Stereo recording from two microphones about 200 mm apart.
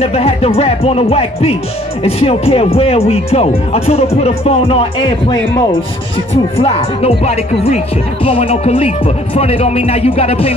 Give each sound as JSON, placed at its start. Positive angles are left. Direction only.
{"t": 0.0, "sound": "speech", "side_deg": 30}
{"t": 6.3, "sound": "speech", "side_deg": 30}